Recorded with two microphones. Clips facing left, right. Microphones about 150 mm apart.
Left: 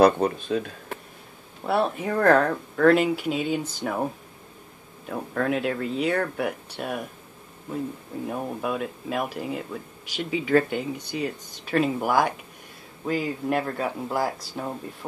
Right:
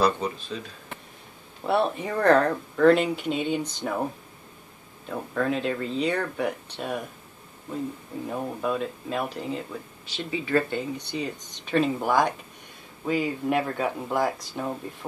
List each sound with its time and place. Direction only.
0.0 s speech: 55° left (ahead or behind)
1.7 s speech: centre (ahead or behind)
5.3 s speech: 5° left (ahead or behind)
8.3 s speech: 10° left (ahead or behind)